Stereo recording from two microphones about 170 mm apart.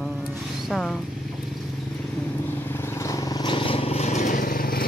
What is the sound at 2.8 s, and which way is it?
Vehicle, 15° left (ahead or behind).